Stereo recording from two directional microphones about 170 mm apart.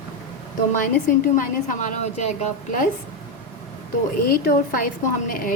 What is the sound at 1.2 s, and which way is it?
A woman's voice, 50° left (ahead or behind).